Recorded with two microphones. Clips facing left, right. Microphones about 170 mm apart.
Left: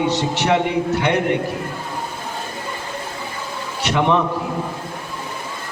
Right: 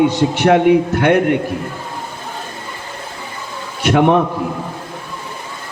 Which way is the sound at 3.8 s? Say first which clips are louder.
Right 6 dB; 50° right (ahead or behind).